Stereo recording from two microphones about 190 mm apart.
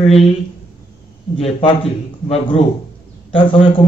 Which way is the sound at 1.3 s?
30° left (ahead or behind).